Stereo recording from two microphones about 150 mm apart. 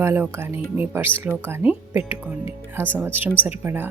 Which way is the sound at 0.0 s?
15° right (ahead or behind).